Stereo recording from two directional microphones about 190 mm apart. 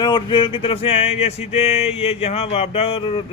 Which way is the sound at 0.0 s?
25° left (ahead or behind).